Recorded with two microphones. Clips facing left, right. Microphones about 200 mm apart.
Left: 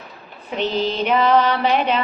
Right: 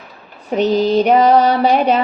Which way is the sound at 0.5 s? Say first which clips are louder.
Right 8 dB; 40° right (ahead or behind).